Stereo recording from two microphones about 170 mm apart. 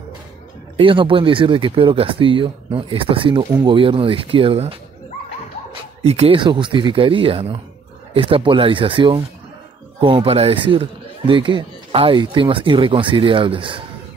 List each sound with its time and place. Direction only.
0.7 s a man's voice: 30° right (ahead or behind)
6.0 s a man's voice: 35° right (ahead or behind)